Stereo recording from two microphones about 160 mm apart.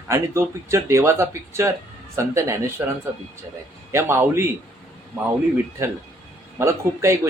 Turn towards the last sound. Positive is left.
turn(degrees=-15)  # may be behind; listen again after turning